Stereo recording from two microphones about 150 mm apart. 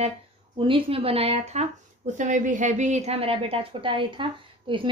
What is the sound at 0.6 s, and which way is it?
A woman's voice, 35° right (ahead or behind).